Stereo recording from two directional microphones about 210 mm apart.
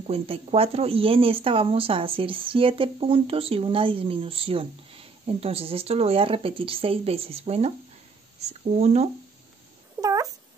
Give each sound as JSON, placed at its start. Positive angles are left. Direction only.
{"t": 0.0, "sound": "speech", "side_deg": -30}
{"t": 10.0, "sound": "cat", "side_deg": -5}